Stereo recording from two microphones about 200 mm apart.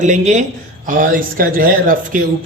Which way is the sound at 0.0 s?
40° right (ahead or behind).